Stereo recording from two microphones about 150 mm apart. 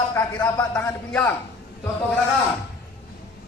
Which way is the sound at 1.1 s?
10° left (ahead or behind).